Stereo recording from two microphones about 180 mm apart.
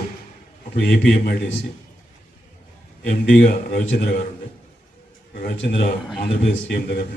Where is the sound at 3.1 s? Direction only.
50° left (ahead or behind).